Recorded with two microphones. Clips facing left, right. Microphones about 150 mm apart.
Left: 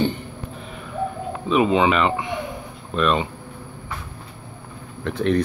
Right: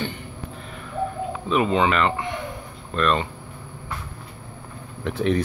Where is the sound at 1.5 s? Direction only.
10° left (ahead or behind).